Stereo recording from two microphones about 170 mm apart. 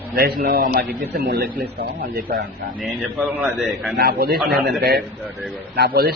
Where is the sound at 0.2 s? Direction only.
60° right (ahead or behind).